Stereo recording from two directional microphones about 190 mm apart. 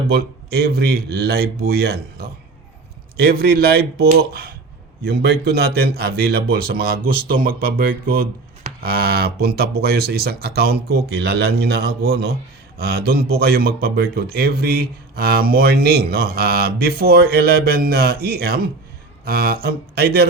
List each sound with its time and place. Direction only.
0.1 s speech: 55° right (ahead or behind)